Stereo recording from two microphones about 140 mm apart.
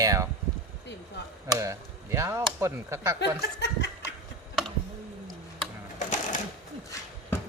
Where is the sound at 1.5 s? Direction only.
25° right (ahead or behind).